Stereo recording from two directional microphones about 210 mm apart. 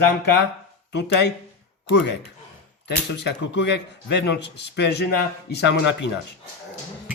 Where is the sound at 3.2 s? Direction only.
55° left (ahead or behind).